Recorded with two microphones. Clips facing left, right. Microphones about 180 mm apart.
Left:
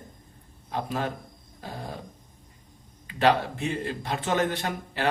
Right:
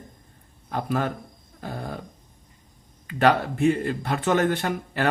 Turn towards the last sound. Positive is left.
turn(degrees=-55)  # may be behind; listen again after turning